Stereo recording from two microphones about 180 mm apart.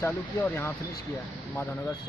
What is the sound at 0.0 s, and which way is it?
Speech, 10° left (ahead or behind).